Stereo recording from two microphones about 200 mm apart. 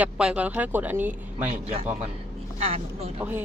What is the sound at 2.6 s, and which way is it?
Speech, 30° right (ahead or behind).